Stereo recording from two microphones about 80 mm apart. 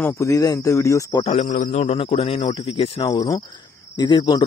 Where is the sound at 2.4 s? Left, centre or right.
Left.